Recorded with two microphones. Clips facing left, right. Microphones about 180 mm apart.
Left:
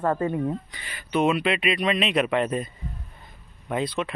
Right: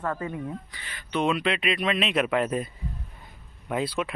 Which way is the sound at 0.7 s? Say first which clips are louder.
Left 4 dB; 10° left (ahead or behind).